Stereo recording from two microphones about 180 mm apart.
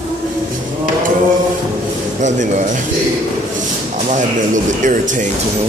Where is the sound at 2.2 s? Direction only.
40° right (ahead or behind).